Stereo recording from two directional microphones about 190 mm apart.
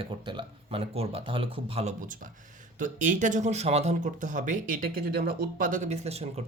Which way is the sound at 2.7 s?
40° right (ahead or behind).